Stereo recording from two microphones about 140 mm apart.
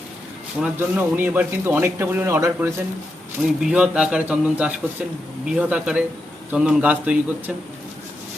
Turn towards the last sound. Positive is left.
turn(degrees=-10)  # may be behind; listen again after turning